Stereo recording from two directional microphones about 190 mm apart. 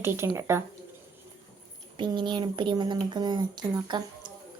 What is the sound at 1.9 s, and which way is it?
Speech, 25° right (ahead or behind).